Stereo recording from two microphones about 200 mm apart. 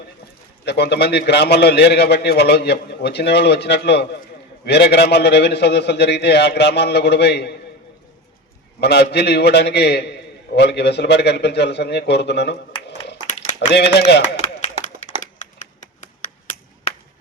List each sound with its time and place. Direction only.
0.6 s a man's voice: 55° left (ahead or behind)
8.8 s a man's voice: 55° left (ahead or behind)
13.7 s a man's voice: 55° left (ahead or behind)
15.2 s a sound: 40° left (ahead or behind)